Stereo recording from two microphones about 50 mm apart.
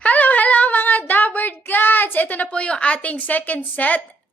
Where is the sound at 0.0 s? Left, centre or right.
Left.